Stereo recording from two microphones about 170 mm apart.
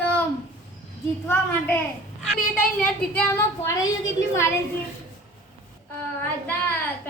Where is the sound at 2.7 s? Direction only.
5° left (ahead or behind).